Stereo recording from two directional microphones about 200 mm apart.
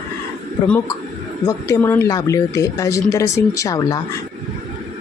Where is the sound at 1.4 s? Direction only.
15° left (ahead or behind).